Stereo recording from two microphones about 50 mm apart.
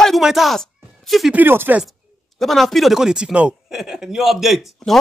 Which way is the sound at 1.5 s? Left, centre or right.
Right.